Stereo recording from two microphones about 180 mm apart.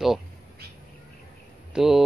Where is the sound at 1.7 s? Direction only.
Centre (ahead or behind).